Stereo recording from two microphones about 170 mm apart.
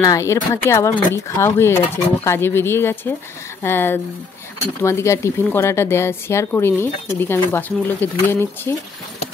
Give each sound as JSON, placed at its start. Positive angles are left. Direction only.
{"t": 0.0, "sound": "speech", "side_deg": 20}